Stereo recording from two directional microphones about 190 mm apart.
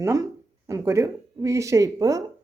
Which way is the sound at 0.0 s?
15° right (ahead or behind).